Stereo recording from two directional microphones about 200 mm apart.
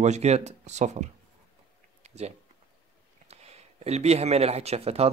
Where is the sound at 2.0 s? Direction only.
35° right (ahead or behind).